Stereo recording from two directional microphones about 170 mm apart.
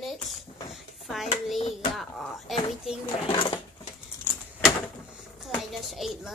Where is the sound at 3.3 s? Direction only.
30° left (ahead or behind).